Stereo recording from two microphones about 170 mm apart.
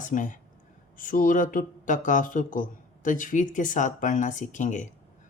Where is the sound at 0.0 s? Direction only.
50° left (ahead or behind).